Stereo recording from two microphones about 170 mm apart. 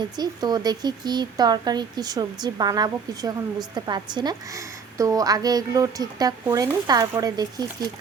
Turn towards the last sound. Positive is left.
turn(degrees=-20)  # may be behind; listen again after turning